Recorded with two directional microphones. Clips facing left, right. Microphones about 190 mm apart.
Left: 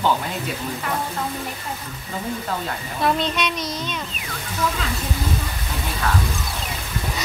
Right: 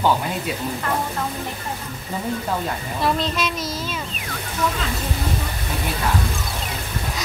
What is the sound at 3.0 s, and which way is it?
Speech, centre (ahead or behind).